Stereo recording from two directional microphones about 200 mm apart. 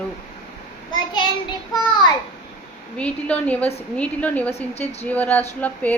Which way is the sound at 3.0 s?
5° left (ahead or behind).